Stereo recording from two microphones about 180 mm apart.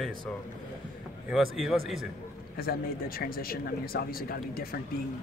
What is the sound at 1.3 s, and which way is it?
Speech, centre (ahead or behind).